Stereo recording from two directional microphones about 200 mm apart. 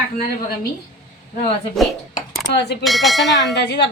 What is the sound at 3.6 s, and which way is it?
Speech, 60° left (ahead or behind).